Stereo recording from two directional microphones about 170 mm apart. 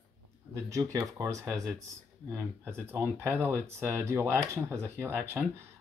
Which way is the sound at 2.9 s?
10° right (ahead or behind).